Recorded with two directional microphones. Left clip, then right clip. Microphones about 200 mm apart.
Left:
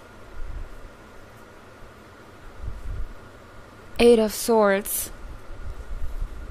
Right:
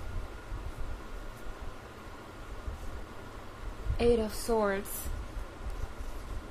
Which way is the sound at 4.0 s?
50° left (ahead or behind).